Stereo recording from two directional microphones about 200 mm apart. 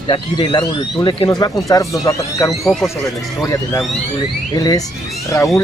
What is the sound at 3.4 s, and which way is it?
Speech, 15° left (ahead or behind).